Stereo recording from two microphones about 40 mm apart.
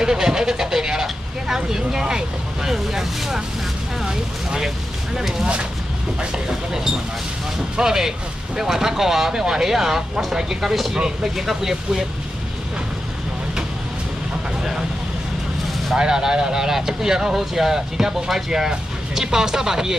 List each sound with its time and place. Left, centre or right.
0.0 s speech: centre
10.6 s speech: centre
16.0 s speech: centre